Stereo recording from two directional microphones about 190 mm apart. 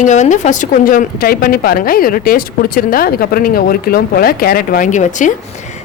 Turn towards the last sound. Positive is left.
turn(degrees=40)  # may be behind; listen again after turning